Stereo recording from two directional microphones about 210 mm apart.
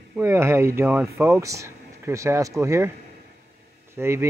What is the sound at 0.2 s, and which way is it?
Speech, 10° right (ahead or behind).